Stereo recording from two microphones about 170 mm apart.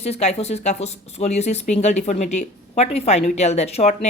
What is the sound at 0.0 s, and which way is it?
A woman's voice, 40° left (ahead or behind).